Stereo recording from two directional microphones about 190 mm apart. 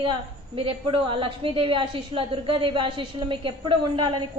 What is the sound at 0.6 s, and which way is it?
A woman's voice, 30° right (ahead or behind).